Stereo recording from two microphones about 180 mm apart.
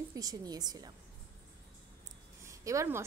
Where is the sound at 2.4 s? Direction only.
15° right (ahead or behind).